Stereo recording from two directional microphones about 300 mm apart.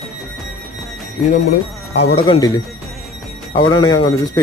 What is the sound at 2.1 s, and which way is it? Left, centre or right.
Speech, centre.